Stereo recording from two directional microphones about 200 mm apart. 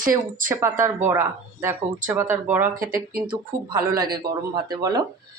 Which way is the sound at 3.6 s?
20° right (ahead or behind).